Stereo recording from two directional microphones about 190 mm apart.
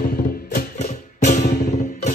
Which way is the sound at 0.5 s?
45° left (ahead or behind).